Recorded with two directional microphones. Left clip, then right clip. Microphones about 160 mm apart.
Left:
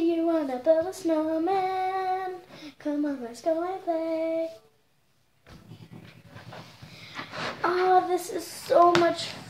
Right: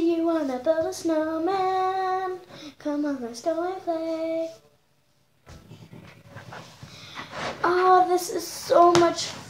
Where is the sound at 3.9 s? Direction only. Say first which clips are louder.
Left 1 dB; 15° right (ahead or behind).